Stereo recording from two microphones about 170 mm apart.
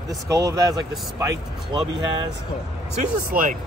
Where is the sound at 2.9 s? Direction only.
50° right (ahead or behind).